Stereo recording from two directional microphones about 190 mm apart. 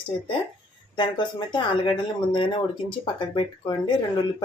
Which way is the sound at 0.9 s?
25° left (ahead or behind).